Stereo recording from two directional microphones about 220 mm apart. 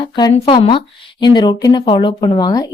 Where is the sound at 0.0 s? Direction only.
20° left (ahead or behind).